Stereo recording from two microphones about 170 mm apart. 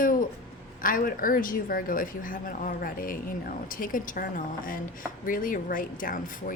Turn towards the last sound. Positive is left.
turn(degrees=55)  # may be behind; listen again after turning